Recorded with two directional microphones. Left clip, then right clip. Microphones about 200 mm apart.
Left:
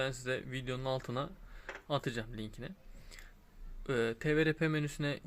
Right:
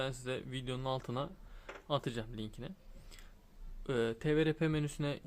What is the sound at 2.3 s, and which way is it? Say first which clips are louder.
Speech: even; 50° right (ahead or behind).